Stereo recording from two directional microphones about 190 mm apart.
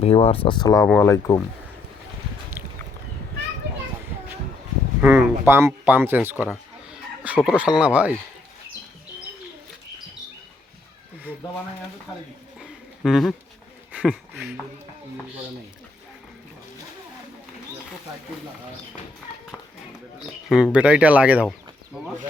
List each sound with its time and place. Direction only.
0.0 s speech: 30° left (ahead or behind); by 1.4 s 15° left (ahead or behind)
4.9 s speech: 10° right (ahead or behind)
13.0 s speech: centre (ahead or behind)
20.1 s speech: 5° right (ahead or behind)